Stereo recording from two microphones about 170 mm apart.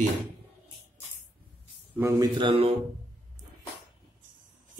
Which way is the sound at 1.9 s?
15° right (ahead or behind).